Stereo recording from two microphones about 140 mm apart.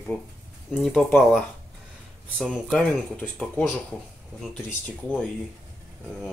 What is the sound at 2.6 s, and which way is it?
Speech, 10° left (ahead or behind).